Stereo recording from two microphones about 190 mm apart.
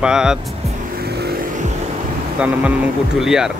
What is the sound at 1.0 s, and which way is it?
Vehicle, 55° right (ahead or behind).